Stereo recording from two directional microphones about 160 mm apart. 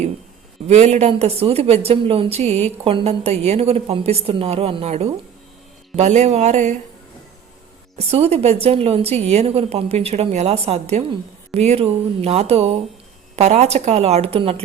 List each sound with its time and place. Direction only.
0.7 s a woman's voice: 45° right (ahead or behind)
7.9 s a woman's voice: 40° right (ahead or behind)